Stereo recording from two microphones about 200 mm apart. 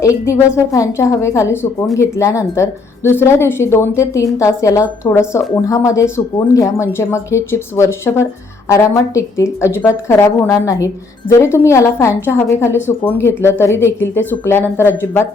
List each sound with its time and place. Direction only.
0.3 s a woman's voice: 15° left (ahead or behind)